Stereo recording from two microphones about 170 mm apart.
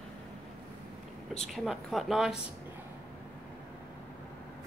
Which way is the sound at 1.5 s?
Centre (ahead or behind).